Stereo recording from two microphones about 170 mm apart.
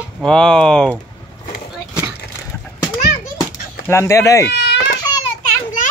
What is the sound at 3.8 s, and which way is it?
Speech, 15° left (ahead or behind).